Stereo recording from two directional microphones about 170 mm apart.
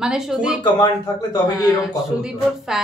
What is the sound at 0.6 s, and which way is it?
Speech, 25° left (ahead or behind).